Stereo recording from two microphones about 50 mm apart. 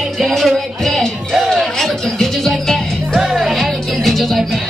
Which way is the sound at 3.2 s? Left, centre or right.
Centre.